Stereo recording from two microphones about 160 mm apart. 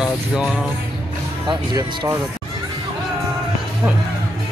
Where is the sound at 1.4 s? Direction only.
25° right (ahead or behind).